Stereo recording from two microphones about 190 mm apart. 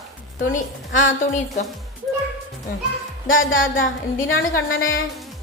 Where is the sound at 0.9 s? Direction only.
90° left.